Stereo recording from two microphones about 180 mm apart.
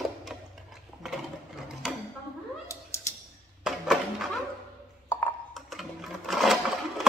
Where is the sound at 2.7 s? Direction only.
15° left (ahead or behind).